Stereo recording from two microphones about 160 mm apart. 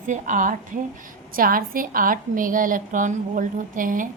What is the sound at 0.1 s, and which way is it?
A woman's voice, 55° right (ahead or behind).